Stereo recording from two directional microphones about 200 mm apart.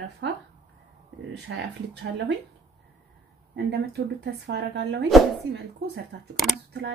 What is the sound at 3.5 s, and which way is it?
A woman's voice, 55° right (ahead or behind).